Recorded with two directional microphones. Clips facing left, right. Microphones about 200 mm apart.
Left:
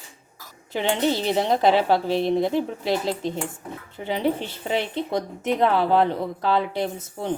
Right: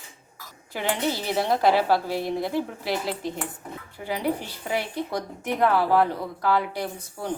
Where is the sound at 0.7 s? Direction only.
25° left (ahead or behind).